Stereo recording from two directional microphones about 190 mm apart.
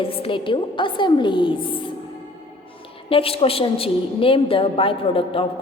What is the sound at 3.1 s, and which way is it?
A woman's voice, 30° left (ahead or behind).